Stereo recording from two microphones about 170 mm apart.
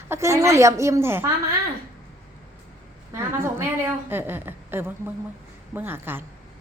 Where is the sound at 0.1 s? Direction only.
15° right (ahead or behind).